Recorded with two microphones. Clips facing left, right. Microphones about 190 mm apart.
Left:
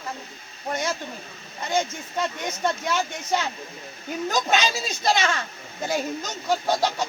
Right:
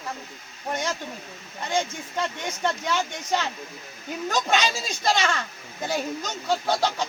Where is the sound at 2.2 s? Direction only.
10° left (ahead or behind).